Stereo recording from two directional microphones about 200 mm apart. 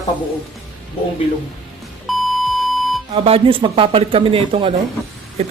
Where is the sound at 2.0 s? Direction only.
Centre (ahead or behind).